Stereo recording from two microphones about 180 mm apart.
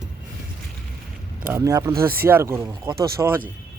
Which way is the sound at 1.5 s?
15° right (ahead or behind).